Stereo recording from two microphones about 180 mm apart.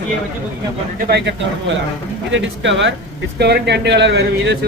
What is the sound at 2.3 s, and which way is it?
Speech, 90° right.